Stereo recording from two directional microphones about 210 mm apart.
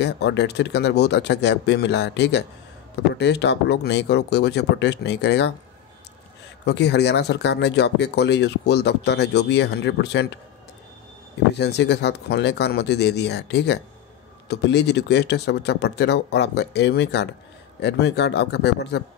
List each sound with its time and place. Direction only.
0.0 s speech: 55° left (ahead or behind)
6.6 s speech: 55° left (ahead or behind)
11.5 s speech: 50° left (ahead or behind)